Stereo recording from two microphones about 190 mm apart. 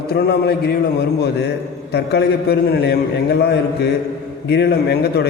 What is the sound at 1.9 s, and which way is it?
A man's voice, 60° left (ahead or behind).